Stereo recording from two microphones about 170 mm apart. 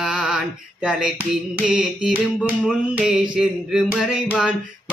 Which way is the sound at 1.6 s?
5° right (ahead or behind).